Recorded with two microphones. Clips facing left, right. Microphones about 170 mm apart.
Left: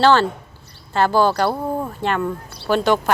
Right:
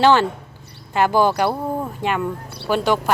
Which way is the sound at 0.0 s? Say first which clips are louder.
Even; 15° right (ahead or behind).